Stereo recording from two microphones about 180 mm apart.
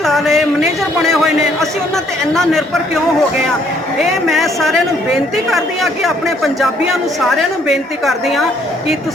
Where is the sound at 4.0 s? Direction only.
Centre (ahead or behind).